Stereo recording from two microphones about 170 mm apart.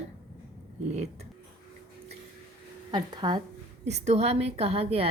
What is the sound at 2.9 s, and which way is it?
Speech, 25° right (ahead or behind).